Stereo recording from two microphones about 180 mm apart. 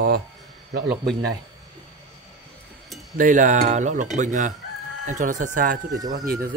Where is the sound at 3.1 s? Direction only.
45° right (ahead or behind).